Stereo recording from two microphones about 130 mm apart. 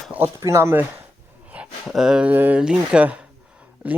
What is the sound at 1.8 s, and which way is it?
Speech, 5° right (ahead or behind).